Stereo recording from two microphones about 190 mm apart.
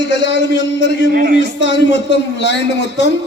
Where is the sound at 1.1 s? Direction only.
50° right (ahead or behind).